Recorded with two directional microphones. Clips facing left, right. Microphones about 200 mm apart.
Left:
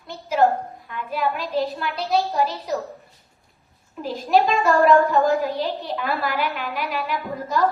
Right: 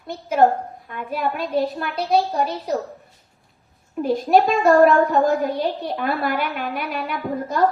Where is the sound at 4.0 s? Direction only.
50° right (ahead or behind).